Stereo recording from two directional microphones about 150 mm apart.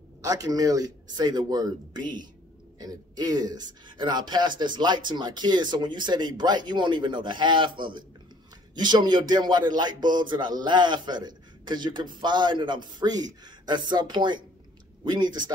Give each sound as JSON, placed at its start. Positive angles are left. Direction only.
{"t": 0.2, "sound": "speech", "side_deg": -25}
{"t": 8.7, "sound": "speech", "side_deg": -30}